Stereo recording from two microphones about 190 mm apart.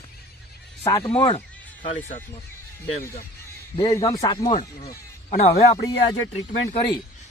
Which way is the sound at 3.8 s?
20° left (ahead or behind).